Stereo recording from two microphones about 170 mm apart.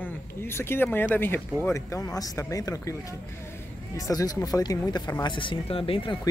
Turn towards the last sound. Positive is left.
turn(degrees=30)  # may be behind; listen again after turning